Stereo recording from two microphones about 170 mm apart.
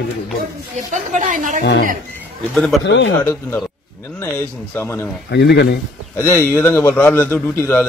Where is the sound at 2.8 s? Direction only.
90° left.